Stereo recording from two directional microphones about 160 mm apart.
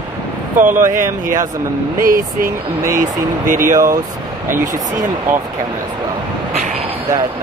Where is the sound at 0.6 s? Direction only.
50° right (ahead or behind).